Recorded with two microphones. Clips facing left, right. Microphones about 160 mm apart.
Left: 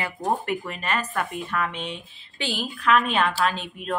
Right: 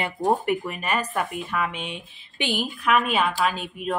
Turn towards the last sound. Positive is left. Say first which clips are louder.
# right 1 dB
turn(degrees=-10)  # may be behind; listen again after turning